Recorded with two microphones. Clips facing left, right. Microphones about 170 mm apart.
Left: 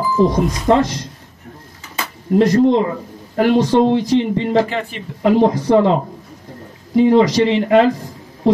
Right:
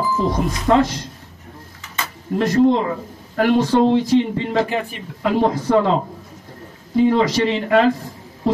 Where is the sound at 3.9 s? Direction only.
15° left (ahead or behind).